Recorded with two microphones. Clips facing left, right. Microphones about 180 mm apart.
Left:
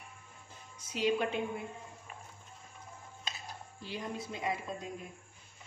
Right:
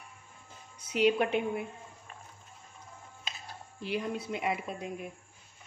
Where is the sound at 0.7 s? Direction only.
65° right (ahead or behind).